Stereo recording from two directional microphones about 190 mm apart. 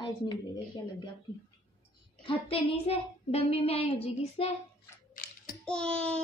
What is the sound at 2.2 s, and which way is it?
A woman's voice, 30° left (ahead or behind).